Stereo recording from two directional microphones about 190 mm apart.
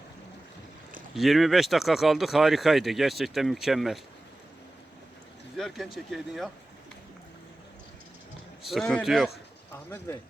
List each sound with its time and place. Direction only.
1.1 s speech: centre (ahead or behind)
5.5 s speech: centre (ahead or behind)
8.6 s speech: centre (ahead or behind)